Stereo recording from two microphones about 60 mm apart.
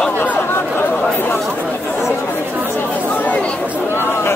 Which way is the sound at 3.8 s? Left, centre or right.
Left.